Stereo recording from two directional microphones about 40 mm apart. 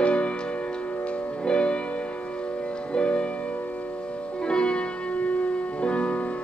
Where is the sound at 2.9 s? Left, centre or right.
Left.